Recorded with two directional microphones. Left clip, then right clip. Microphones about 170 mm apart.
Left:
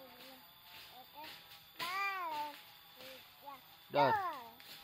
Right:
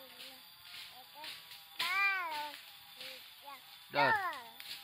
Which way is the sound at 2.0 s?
5° left (ahead or behind).